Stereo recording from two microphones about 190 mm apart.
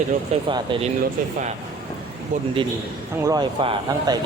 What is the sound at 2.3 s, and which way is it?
Speech, 45° right (ahead or behind).